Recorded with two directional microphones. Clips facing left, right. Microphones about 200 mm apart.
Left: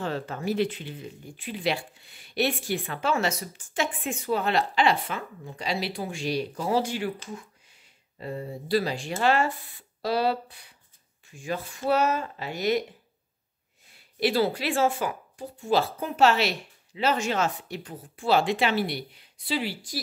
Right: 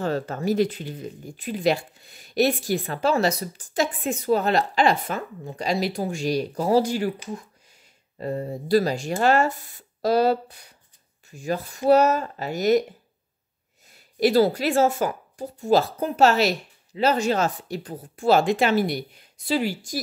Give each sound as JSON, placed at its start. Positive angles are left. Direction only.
{"t": 0.0, "sound": "speech", "side_deg": -40}
{"t": 13.8, "sound": "speech", "side_deg": -40}